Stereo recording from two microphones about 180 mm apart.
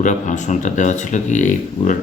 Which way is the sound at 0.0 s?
40° left (ahead or behind).